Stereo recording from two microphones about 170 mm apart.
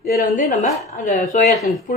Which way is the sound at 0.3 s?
45° left (ahead or behind).